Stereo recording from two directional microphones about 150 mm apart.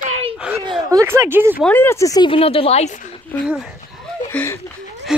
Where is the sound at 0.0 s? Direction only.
45° right (ahead or behind).